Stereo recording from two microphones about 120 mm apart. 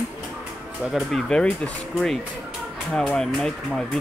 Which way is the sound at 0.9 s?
5° left (ahead or behind).